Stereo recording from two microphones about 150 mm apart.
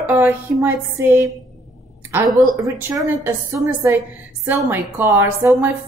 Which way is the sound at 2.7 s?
15° right (ahead or behind).